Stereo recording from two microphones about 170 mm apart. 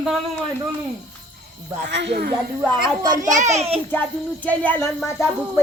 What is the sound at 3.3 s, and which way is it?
Speech, 40° right (ahead or behind).